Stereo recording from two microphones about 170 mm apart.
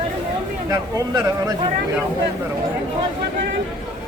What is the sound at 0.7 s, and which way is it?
Speech, 20° right (ahead or behind).